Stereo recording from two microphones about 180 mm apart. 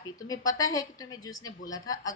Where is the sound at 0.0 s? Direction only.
20° left (ahead or behind).